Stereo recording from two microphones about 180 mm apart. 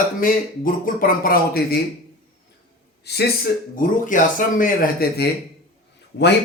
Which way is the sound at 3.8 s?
45° left (ahead or behind).